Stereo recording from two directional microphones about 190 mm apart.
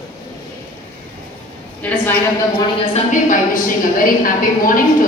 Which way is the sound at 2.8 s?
35° left (ahead or behind).